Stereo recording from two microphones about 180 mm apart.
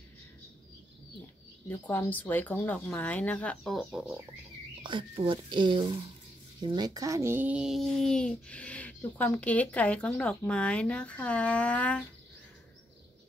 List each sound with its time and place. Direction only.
1.7 s a child's voice: 10° left (ahead or behind)
4.8 s a child's voice: 25° right (ahead or behind); by 12.0 s 5° left (ahead or behind)